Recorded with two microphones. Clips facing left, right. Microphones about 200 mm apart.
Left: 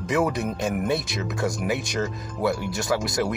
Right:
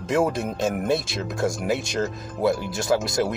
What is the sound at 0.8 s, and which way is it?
Speech, 5° left (ahead or behind).